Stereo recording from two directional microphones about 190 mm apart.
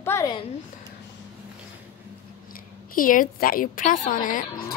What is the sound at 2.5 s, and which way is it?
A woman's voice, 45° left (ahead or behind).